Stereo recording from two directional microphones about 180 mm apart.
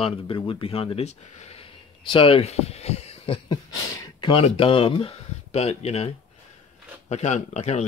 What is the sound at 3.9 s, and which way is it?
Speech, 20° left (ahead or behind).